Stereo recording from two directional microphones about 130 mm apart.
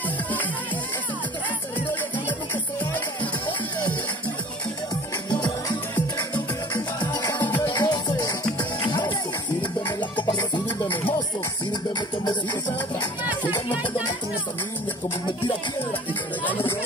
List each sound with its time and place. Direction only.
5.3 s music: 30° left (ahead or behind)
15.9 s run: 15° left (ahead or behind)